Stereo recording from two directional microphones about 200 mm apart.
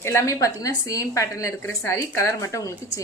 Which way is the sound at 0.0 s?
15° left (ahead or behind).